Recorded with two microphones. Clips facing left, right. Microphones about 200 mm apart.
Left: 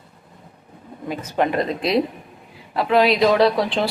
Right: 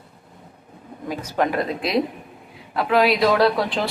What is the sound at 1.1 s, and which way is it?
A man's voice, 10° right (ahead or behind).